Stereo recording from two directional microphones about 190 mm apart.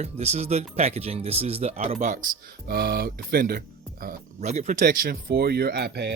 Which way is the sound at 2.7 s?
55° right (ahead or behind).